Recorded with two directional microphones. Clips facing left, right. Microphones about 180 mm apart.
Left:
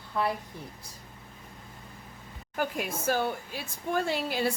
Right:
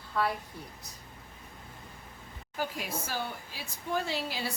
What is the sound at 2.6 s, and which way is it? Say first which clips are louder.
Speech: left 4 dB; 55° left (ahead or behind).